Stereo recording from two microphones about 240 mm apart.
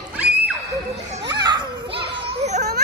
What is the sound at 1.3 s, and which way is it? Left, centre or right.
Children playing, centre.